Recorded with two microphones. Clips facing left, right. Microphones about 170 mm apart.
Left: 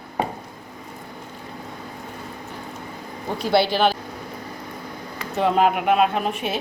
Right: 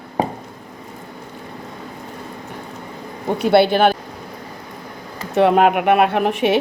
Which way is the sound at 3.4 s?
60° right (ahead or behind).